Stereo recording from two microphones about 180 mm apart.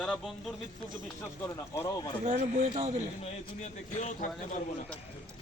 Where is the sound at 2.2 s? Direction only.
45° right (ahead or behind).